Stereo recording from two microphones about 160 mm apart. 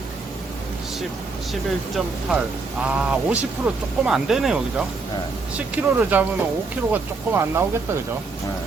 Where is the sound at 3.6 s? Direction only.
5° right (ahead or behind).